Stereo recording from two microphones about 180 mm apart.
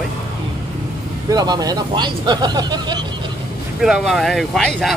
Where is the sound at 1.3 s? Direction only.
20° right (ahead or behind).